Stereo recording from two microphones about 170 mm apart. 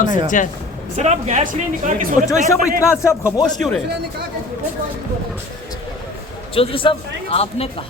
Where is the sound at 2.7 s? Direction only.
15° left (ahead or behind).